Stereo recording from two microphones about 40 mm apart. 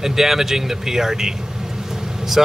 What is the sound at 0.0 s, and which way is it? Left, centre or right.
Speech, centre.